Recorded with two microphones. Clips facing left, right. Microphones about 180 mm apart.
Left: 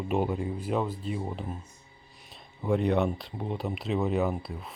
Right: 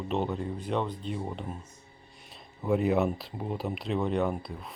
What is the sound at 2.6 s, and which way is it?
Speech, 5° right (ahead or behind).